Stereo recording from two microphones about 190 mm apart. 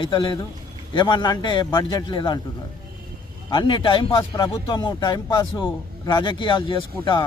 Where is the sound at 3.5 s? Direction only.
25° left (ahead or behind).